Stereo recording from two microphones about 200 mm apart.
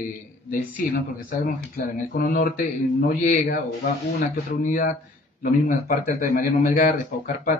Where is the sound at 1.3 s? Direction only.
45° left (ahead or behind).